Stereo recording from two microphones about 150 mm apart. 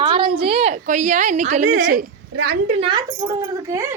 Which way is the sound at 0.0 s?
35° right (ahead or behind).